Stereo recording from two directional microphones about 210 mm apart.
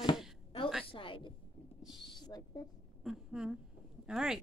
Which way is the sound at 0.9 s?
25° left (ahead or behind).